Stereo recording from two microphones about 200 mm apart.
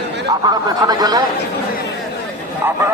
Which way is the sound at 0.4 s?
20° right (ahead or behind).